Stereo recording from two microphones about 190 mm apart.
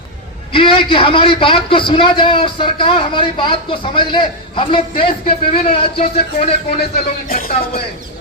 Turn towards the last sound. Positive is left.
turn(degrees=50)  # may be behind; listen again after turning